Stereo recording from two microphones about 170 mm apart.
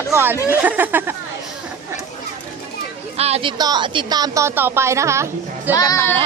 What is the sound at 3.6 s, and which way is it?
A woman's voice, 25° right (ahead or behind).